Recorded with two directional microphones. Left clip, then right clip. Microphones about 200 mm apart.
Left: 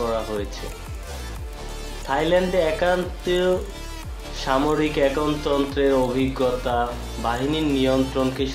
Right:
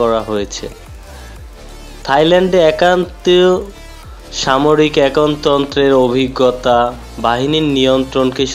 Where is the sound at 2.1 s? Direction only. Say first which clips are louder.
Right 10 dB; 50° right (ahead or behind).